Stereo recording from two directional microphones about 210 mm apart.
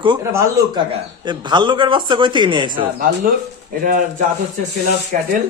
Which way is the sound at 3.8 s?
40° right (ahead or behind).